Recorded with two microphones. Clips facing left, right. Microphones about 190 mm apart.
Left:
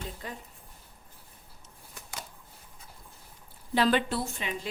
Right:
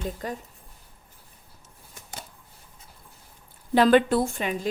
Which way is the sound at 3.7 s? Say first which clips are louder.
Right 8 dB; 50° right (ahead or behind).